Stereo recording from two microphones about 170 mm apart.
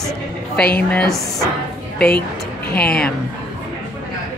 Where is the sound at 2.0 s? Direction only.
65° left (ahead or behind).